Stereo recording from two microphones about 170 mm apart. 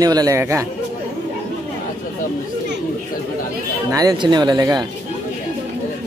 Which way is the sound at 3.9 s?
25° right (ahead or behind).